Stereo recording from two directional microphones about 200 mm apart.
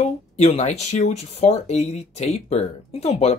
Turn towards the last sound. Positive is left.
turn(degrees=30)  # may be behind; listen again after turning